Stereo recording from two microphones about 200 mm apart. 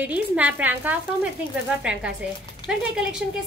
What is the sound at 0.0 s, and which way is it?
A woman's voice, 5° right (ahead or behind).